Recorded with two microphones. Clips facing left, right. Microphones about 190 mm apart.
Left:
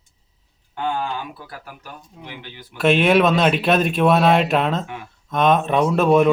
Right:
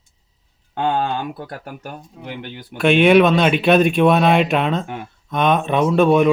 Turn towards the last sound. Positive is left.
turn(degrees=0)  # may be behind; listen again after turning